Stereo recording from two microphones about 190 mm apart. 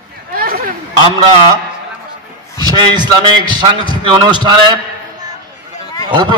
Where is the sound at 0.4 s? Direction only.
50° right (ahead or behind).